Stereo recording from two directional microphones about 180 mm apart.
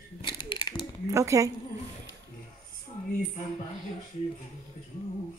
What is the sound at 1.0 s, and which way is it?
Speech, 15° right (ahead or behind).